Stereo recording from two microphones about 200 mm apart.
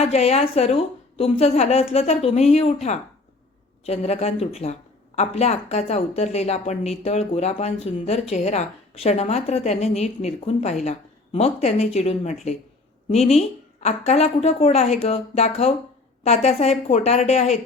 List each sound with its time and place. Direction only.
0.0 s speech: 30° left (ahead or behind)